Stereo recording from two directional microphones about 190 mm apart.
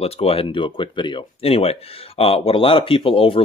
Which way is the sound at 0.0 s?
30° left (ahead or behind).